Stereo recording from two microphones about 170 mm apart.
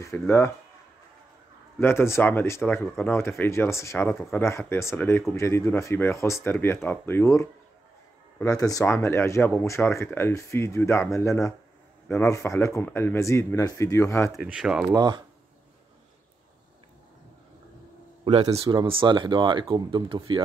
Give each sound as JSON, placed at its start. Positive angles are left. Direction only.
{"t": 0.0, "sound": "speech", "side_deg": 15}
{"t": 1.8, "sound": "speech", "side_deg": 15}
{"t": 14.3, "sound": "speech", "side_deg": -5}
{"t": 14.9, "sound": "speech", "side_deg": -25}
{"t": 18.2, "sound": "speech", "side_deg": -35}